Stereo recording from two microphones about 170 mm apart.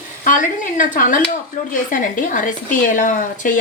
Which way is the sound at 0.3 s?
50° left (ahead or behind).